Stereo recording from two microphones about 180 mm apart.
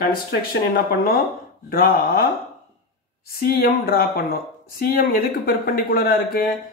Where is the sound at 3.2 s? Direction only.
55° left (ahead or behind).